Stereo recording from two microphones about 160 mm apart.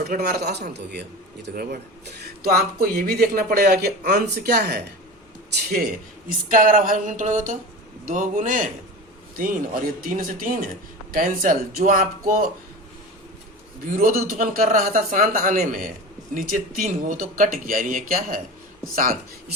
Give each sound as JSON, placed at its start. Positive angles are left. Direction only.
{"t": 0.0, "sound": "a man's voice", "side_deg": -70}
{"t": 5.8, "sound": "a man's voice", "side_deg": -60}
{"t": 13.9, "sound": "speech", "side_deg": -65}